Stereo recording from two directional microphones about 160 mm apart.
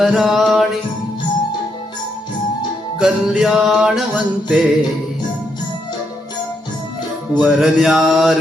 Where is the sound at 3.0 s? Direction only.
5° right (ahead or behind).